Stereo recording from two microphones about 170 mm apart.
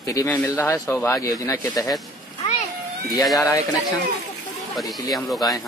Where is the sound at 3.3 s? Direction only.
20° left (ahead or behind).